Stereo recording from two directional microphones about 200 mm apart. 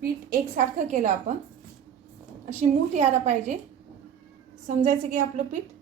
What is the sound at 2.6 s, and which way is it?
Speech, 35° right (ahead or behind).